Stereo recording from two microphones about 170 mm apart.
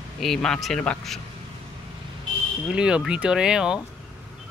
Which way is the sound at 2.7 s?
5° right (ahead or behind).